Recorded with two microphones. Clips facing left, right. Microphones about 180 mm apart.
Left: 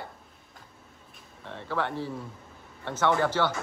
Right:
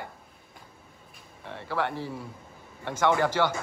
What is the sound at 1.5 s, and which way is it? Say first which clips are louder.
A man's voice: right 1 dB; 10° right (ahead or behind).